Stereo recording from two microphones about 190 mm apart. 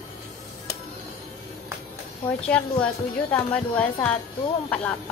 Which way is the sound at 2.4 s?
5° left (ahead or behind).